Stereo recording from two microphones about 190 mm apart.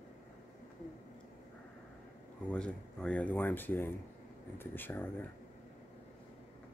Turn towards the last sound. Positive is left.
turn(degrees=10)  # may be behind; listen again after turning